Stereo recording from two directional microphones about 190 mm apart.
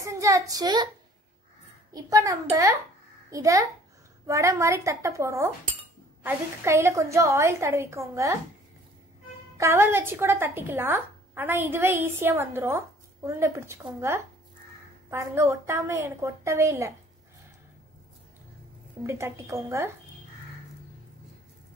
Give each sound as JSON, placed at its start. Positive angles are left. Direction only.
{"t": 0.0, "sound": "a woman's voice", "side_deg": -15}
{"t": 2.0, "sound": "a child's voice", "side_deg": -20}
{"t": 9.6, "sound": "speech", "side_deg": -15}
{"t": 19.0, "sound": "speech", "side_deg": -15}